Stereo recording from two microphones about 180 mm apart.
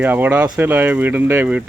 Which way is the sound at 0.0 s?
10° right (ahead or behind).